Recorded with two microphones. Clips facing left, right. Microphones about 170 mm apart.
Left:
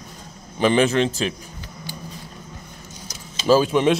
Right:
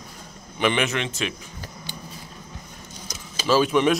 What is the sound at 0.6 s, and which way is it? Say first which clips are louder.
Speech: left 6 dB; 35° left (ahead or behind).